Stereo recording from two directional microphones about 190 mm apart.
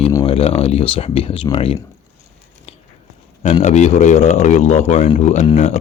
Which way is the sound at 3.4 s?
35° left (ahead or behind).